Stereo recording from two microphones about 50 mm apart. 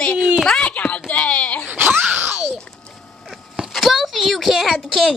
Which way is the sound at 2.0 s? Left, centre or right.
Right.